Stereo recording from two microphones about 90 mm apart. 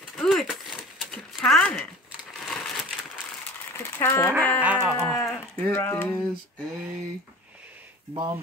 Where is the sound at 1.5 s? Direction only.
10° left (ahead or behind).